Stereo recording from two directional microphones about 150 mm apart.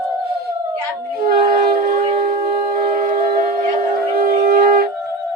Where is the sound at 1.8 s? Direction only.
90° right.